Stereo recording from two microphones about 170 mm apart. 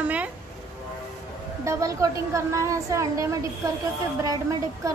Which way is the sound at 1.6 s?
20° right (ahead or behind).